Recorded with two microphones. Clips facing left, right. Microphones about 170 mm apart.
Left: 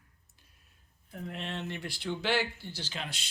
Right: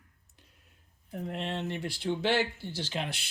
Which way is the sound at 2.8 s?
60° right (ahead or behind).